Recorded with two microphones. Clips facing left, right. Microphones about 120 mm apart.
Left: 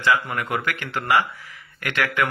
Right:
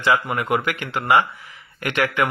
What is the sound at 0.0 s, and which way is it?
A man's voice, 20° right (ahead or behind).